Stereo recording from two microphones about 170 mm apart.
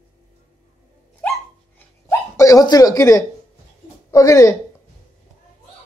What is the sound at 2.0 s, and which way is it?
Hiccup, 20° left (ahead or behind).